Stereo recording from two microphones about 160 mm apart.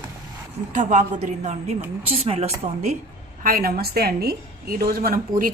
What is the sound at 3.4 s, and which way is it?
A woman's voice, 65° right (ahead or behind).